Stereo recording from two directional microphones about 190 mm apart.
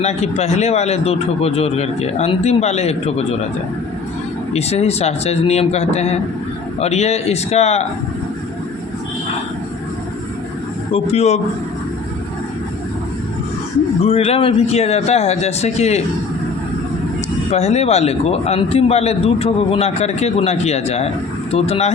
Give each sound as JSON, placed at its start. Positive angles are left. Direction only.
{"t": 0.0, "sound": "speech", "side_deg": 35}
{"t": 4.5, "sound": "speech", "side_deg": 35}
{"t": 10.9, "sound": "speech", "side_deg": 35}
{"t": 14.0, "sound": "speech", "side_deg": 30}
{"t": 17.5, "sound": "speech", "side_deg": 35}